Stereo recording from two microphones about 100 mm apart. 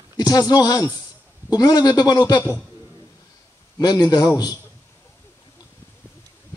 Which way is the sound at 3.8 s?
40° left (ahead or behind).